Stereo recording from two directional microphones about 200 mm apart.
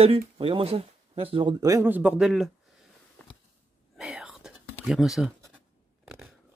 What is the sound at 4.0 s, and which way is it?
Whispering, 5° right (ahead or behind).